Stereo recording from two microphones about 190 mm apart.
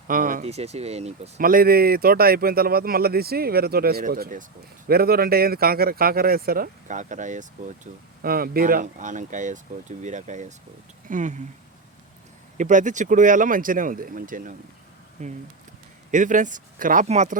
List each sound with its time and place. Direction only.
0.1 s a man's voice: 45° right (ahead or behind)
0.4 s speech: 35° right (ahead or behind)
1.4 s a man's voice: 50° right (ahead or behind)
12.5 s a man's voice: 40° right (ahead or behind)